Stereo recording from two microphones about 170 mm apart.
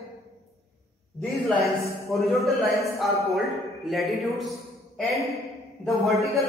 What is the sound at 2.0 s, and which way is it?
A man's voice, centre (ahead or behind).